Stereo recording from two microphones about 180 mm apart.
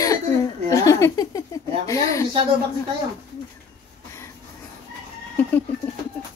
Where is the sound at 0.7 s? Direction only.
15° left (ahead or behind).